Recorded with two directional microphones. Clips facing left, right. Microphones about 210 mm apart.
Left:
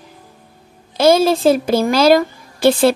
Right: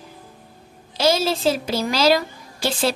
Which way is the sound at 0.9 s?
55° left (ahead or behind).